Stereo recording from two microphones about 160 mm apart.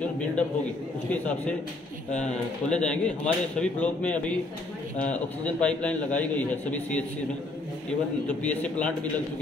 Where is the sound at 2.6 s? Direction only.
5° left (ahead or behind).